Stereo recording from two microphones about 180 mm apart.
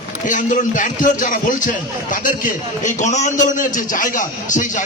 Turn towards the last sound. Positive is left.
turn(degrees=45)  # may be behind; listen again after turning